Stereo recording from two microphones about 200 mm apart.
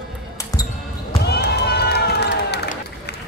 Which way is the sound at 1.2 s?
55° left (ahead or behind).